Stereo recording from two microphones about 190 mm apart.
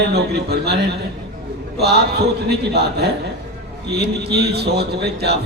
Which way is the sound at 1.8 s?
60° right (ahead or behind).